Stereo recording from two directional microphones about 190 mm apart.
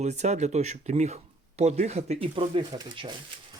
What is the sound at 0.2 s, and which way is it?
Speech, 35° right (ahead or behind).